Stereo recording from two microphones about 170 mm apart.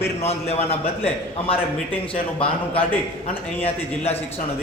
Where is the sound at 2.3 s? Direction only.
30° left (ahead or behind).